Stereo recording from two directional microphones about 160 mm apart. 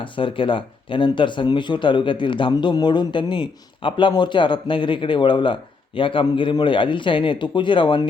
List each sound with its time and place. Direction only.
0.0 s speech: 30° left (ahead or behind)